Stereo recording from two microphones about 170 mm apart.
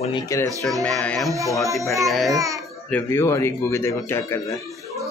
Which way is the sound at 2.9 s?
15° left (ahead or behind).